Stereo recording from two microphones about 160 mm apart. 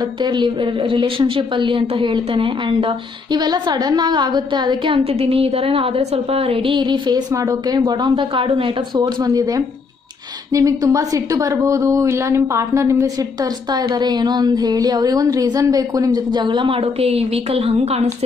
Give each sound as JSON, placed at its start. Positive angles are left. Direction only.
{"t": 0.2, "sound": "a woman's voice", "side_deg": -30}